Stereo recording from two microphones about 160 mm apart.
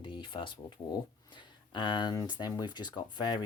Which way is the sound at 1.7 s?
30° left (ahead or behind).